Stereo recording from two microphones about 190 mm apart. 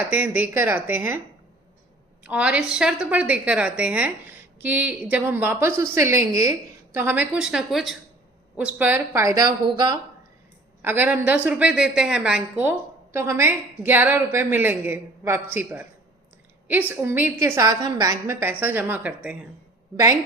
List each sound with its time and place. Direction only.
0.1 s a woman's voice: 10° right (ahead or behind)
2.2 s a woman's voice: 5° right (ahead or behind); by 10.0 s 20° right (ahead or behind)
10.8 s a woman's voice: 10° right (ahead or behind)